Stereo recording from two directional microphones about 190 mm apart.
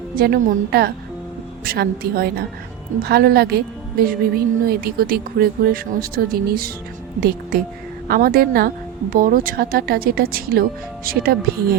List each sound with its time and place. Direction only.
0.2 s a woman's voice: 50° right (ahead or behind)